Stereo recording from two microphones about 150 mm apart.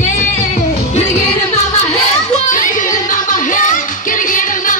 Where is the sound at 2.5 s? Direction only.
60° left (ahead or behind).